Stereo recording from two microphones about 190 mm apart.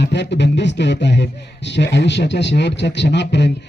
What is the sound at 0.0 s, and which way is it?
A man's voice, 65° left (ahead or behind).